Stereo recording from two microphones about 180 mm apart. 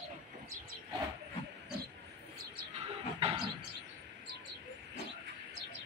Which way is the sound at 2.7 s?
35° right (ahead or behind).